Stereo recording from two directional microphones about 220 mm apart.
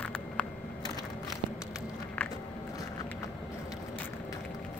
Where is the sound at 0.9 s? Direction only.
15° left (ahead or behind).